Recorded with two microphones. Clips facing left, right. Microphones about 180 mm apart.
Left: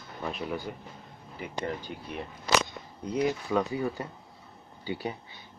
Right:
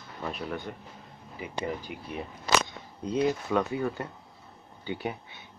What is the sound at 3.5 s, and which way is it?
Speech, 5° left (ahead or behind).